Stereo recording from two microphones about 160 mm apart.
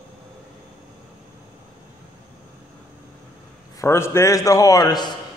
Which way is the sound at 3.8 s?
15° left (ahead or behind).